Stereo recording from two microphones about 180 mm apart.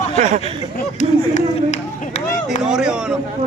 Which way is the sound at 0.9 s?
40° left (ahead or behind).